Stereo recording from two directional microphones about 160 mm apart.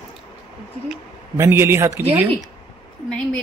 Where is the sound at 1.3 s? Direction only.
15° right (ahead or behind).